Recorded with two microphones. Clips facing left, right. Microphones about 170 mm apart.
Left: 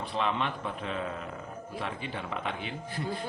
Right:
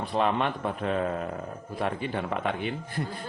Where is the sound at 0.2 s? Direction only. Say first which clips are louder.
Right 5 dB; 50° right (ahead or behind).